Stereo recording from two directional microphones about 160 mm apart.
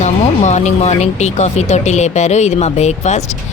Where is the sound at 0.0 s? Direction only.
45° left (ahead or behind).